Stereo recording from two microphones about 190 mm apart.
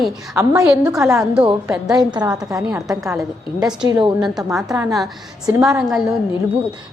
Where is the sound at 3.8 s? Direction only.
25° right (ahead or behind).